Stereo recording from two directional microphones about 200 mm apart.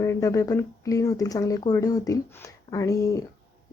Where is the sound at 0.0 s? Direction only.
15° left (ahead or behind).